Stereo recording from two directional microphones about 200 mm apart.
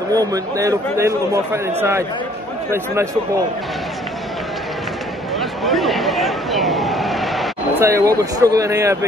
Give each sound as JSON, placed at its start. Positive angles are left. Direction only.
{"t": 0.1, "sound": "a man's voice", "side_deg": -20}
{"t": 5.4, "sound": "a sound", "side_deg": 0}
{"t": 7.8, "sound": "a man's voice", "side_deg": -15}